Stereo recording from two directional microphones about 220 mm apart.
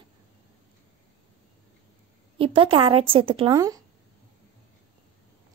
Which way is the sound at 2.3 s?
25° right (ahead or behind).